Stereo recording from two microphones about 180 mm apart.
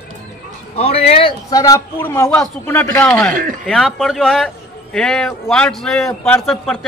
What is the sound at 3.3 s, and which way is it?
Speech, 50° right (ahead or behind).